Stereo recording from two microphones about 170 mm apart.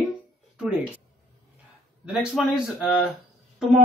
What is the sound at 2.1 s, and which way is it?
Speech, 5° right (ahead or behind).